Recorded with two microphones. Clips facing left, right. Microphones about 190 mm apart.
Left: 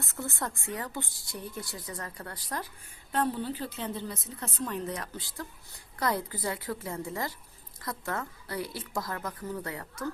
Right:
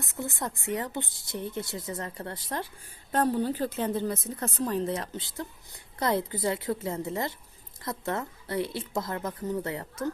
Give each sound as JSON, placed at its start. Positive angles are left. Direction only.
{"t": 0.0, "sound": "a woman's voice", "side_deg": -15}
{"t": 3.1, "sound": "a woman's voice", "side_deg": -45}